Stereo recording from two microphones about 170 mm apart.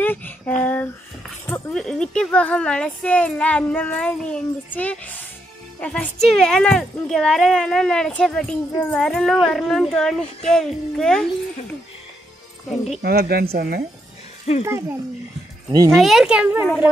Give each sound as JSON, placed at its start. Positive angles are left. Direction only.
{"t": 0.0, "sound": "a sound", "side_deg": 10}
{"t": 1.5, "sound": "speech", "side_deg": 5}
{"t": 13.0, "sound": "a woman's voice", "side_deg": -70}
{"t": 14.5, "sound": "speech", "side_deg": 40}
{"t": 15.7, "sound": "a child's voice", "side_deg": -20}
{"t": 16.0, "sound": "speech", "side_deg": 0}